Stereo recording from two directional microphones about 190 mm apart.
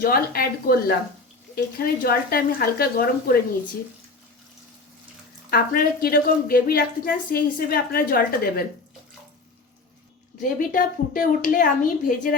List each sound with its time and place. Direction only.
0.0 s a woman's voice: 50° left (ahead or behind)
5.5 s a woman's voice: 50° left (ahead or behind)
10.4 s a woman's voice: 45° left (ahead or behind)